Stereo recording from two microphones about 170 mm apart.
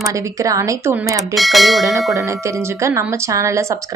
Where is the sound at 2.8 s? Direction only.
15° right (ahead or behind).